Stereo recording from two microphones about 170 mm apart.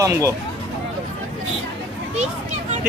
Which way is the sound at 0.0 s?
15° right (ahead or behind).